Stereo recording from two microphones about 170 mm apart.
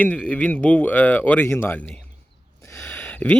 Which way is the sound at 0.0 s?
10° left (ahead or behind).